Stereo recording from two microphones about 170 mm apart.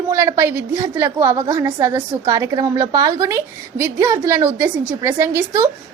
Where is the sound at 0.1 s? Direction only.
15° right (ahead or behind).